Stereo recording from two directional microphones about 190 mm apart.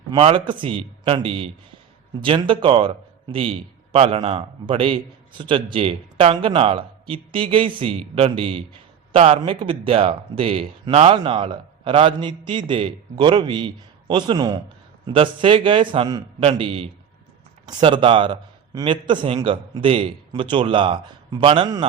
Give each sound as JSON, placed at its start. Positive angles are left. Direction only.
{"t": 0.2, "sound": "a man's voice", "side_deg": -30}